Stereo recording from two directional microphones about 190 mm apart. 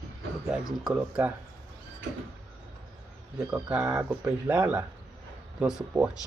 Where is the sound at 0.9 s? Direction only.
5° right (ahead or behind).